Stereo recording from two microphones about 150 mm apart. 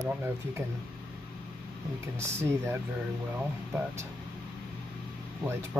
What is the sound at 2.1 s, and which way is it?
Speech, 15° right (ahead or behind).